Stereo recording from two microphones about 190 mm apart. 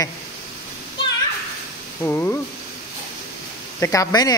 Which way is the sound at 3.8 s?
15° left (ahead or behind).